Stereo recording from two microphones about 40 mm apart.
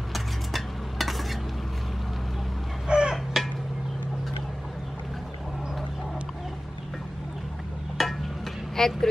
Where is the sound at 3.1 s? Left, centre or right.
Centre.